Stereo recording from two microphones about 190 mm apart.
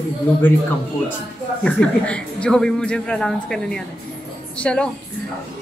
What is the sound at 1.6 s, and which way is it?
A man's voice, 5° left (ahead or behind).